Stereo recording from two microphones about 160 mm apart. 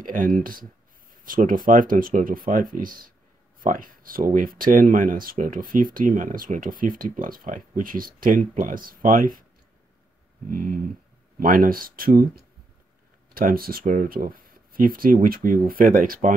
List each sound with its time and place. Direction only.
0.0 s speech: 60° right (ahead or behind)
10.4 s speech: 60° right (ahead or behind)